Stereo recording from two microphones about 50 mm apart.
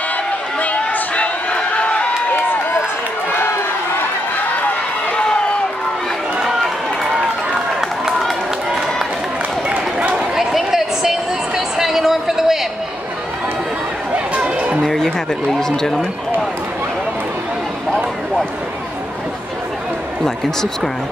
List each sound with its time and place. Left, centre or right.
0.6 s run: left
5.1 s a sound: centre
6.4 s run: centre
9.7 s run: right
10.3 s a sound: centre
14.1 s chatter: right
14.9 s speech: centre